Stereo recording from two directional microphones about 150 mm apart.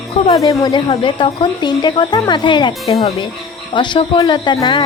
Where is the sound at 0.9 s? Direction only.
35° left (ahead or behind).